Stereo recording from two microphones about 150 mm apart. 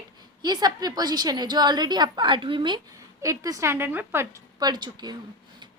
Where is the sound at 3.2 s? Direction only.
20° right (ahead or behind).